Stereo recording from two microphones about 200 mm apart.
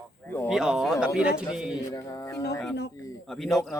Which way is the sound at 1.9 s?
15° left (ahead or behind).